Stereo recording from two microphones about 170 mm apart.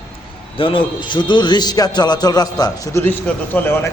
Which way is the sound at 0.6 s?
30° left (ahead or behind).